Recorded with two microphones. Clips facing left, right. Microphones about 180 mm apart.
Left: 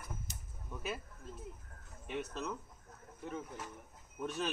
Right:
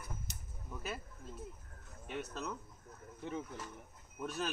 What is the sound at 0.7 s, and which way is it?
Speech, centre (ahead or behind).